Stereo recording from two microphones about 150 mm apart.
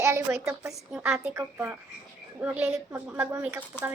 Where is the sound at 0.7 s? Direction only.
5° right (ahead or behind).